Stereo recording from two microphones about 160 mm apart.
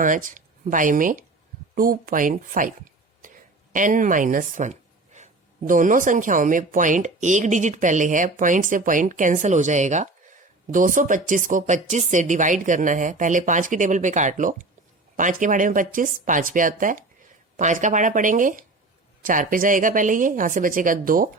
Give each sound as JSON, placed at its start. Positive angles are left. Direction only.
{"t": 0.0, "sound": "a woman's voice", "side_deg": -55}